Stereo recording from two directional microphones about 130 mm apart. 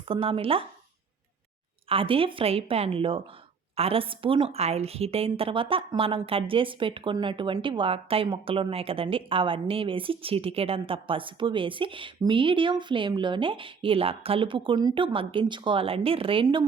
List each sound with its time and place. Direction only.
0.1 s a woman's voice: 45° right (ahead or behind)
1.9 s a woman's voice: 45° right (ahead or behind)